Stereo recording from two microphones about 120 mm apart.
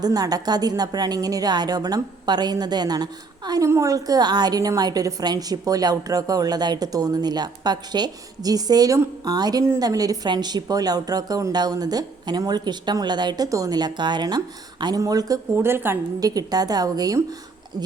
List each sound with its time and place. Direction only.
0.0 s a woman's voice: 30° right (ahead or behind)
15.5 s a woman's voice: 20° right (ahead or behind)
16.2 s a woman's voice: 30° right (ahead or behind)